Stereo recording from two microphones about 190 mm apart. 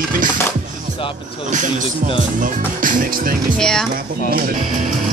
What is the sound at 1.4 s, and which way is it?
Speech, 40° right (ahead or behind).